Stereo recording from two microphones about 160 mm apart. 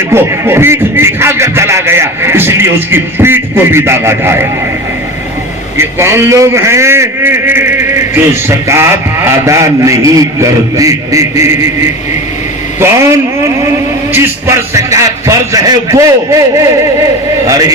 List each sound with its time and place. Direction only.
0.1 s a man's voice: 15° right (ahead or behind)
5.7 s a man's voice: 15° right (ahead or behind)
12.8 s a man's voice: 15° right (ahead or behind)
17.4 s a man's voice: 20° right (ahead or behind)